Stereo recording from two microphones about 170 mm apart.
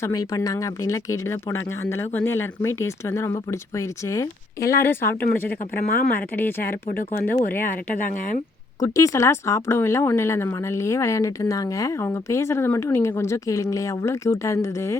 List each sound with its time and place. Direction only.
0.0 s speech: 20° left (ahead or behind)
5.7 s speech: 60° left (ahead or behind)
6.3 s speech: 10° left (ahead or behind)
7.6 s speech: 55° left (ahead or behind)
8.8 s speech: 20° left (ahead or behind)